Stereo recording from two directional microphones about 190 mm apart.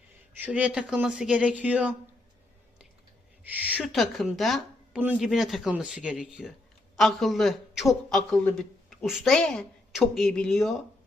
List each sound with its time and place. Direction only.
0.3 s speech: 10° right (ahead or behind)
3.5 s a man's voice: 5° right (ahead or behind)